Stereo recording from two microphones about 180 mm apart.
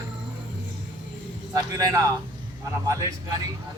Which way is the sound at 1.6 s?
20° right (ahead or behind).